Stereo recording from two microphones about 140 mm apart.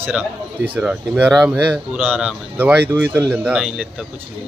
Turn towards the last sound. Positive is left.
turn(degrees=-5)  # may be behind; listen again after turning